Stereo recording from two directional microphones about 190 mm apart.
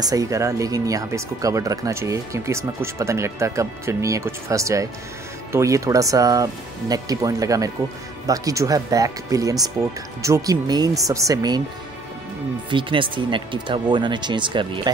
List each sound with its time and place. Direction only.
0.0 s speech: 20° right (ahead or behind)
12.6 s speech: 25° right (ahead or behind)